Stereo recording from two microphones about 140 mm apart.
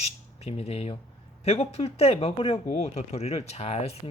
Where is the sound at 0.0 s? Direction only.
50° left (ahead or behind).